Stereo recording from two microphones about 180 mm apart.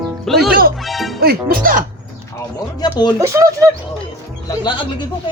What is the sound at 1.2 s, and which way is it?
Speech, 55° right (ahead or behind).